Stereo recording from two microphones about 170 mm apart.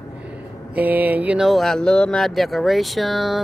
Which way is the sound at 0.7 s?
10° right (ahead or behind).